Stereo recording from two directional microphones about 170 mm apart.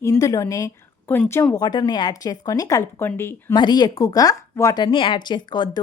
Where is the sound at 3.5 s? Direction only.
25° left (ahead or behind).